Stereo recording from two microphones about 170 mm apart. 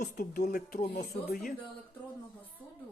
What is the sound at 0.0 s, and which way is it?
Speech, 60° left (ahead or behind).